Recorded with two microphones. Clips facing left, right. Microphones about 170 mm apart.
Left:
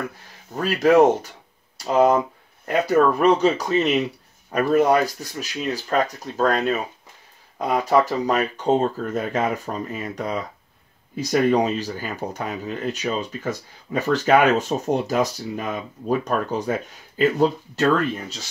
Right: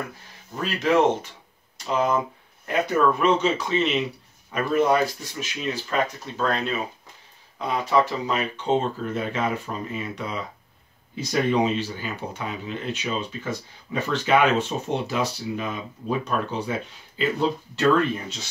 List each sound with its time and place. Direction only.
0.6 s speech: 45° left (ahead or behind)